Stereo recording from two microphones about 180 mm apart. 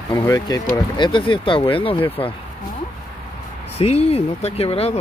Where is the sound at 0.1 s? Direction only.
15° left (ahead or behind).